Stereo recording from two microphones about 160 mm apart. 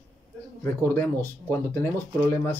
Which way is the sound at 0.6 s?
15° left (ahead or behind).